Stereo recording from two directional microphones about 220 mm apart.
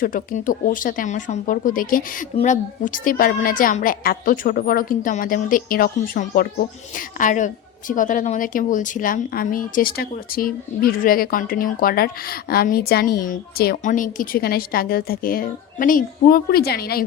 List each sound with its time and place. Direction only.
0.0 s a woman's voice: 40° left (ahead or behind)